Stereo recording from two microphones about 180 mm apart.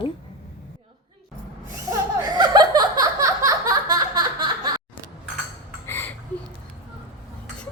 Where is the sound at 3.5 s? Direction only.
20° right (ahead or behind).